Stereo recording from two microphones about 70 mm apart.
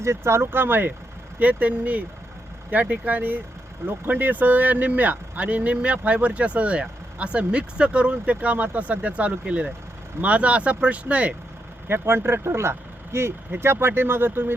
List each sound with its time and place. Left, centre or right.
0.0 s speech: right; by 11.3 s centre
11.9 s speech: right